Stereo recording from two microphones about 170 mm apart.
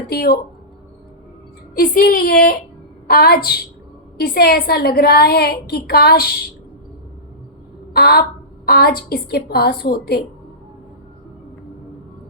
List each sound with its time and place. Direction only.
0.1 s a woman's voice: 70° left (ahead or behind)
1.7 s a woman's voice: 60° left (ahead or behind)
7.9 s a woman's voice: 70° left (ahead or behind)